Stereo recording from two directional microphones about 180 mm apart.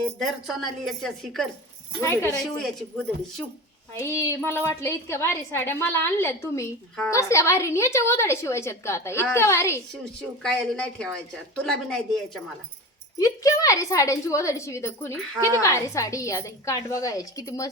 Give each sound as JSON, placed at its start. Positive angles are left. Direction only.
{"t": 0.2, "sound": "a woman's voice", "side_deg": 0}
{"t": 2.0, "sound": "a woman's voice", "side_deg": 15}
{"t": 2.4, "sound": "a woman's voice", "side_deg": 0}
{"t": 3.9, "sound": "a woman's voice", "side_deg": 15}
{"t": 9.9, "sound": "a woman's voice", "side_deg": 5}
{"t": 13.1, "sound": "a woman's voice", "side_deg": 20}